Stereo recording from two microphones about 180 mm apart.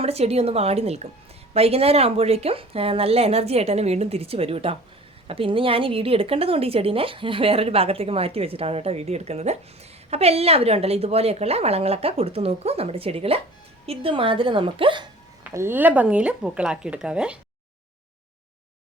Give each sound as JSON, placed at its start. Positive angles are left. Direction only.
{"t": 0.0, "sound": "a woman's voice", "side_deg": -35}
{"t": 15.4, "sound": "speech", "side_deg": -10}